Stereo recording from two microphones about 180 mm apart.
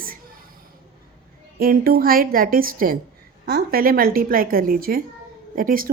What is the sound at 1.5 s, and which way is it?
A woman's voice, 55° right (ahead or behind).